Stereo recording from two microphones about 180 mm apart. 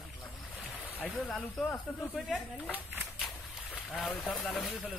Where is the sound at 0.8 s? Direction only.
10° left (ahead or behind).